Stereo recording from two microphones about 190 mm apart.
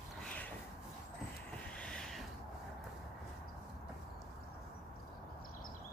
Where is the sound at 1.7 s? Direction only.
5° left (ahead or behind).